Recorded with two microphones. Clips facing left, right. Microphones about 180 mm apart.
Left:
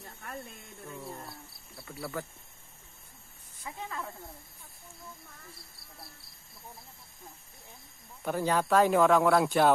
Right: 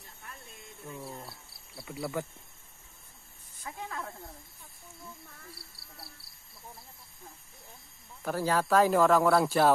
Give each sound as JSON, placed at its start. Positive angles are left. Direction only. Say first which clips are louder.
{"t": 0.0, "sound": "a sound", "louder": "left 7 dB", "side_deg": 55}
{"t": 1.8, "sound": "speech", "louder": "right 3 dB", "side_deg": -15}
{"t": 3.6, "sound": "snake", "louder": "even", "side_deg": 0}
{"t": 8.2, "sound": "speech", "louder": "even", "side_deg": 0}